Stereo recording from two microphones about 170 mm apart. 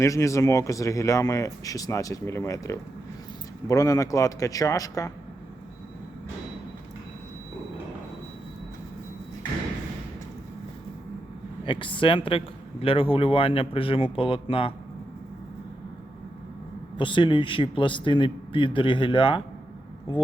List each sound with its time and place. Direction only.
0.0 s speech: 20° left (ahead or behind)
11.6 s speech: 30° left (ahead or behind)
17.0 s speech: 30° left (ahead or behind)